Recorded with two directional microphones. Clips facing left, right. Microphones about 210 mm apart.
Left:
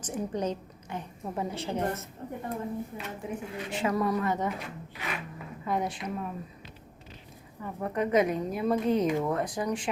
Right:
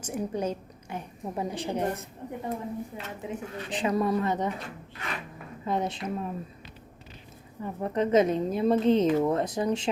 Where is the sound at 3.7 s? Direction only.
20° right (ahead or behind).